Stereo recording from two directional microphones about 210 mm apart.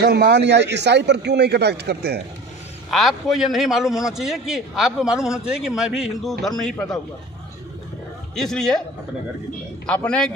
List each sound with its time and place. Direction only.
0.0 s a man's voice: 50° right (ahead or behind)
2.9 s a man's voice: centre (ahead or behind)
8.4 s a man's voice: 5° left (ahead or behind)
9.8 s a man's voice: 5° left (ahead or behind)